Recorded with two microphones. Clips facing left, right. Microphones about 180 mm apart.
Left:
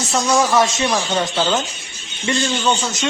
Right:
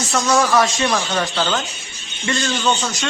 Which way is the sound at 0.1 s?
15° left (ahead or behind).